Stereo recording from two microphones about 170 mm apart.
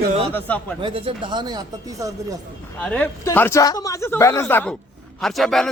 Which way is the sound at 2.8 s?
10° left (ahead or behind).